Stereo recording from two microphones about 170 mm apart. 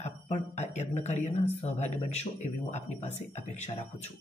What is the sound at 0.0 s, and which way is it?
A woman's voice, 40° left (ahead or behind).